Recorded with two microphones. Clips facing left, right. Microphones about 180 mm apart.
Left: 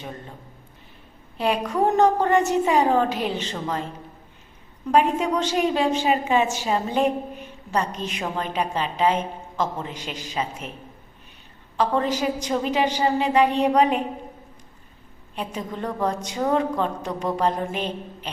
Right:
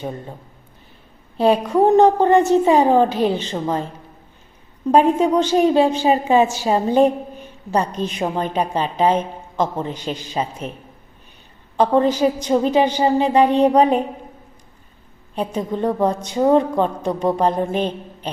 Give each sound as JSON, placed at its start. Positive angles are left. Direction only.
{"t": 1.4, "sound": "a woman's voice", "side_deg": -30}
{"t": 4.9, "sound": "a woman's voice", "side_deg": -30}
{"t": 11.8, "sound": "a woman's voice", "side_deg": -30}
{"t": 15.4, "sound": "a woman's voice", "side_deg": -30}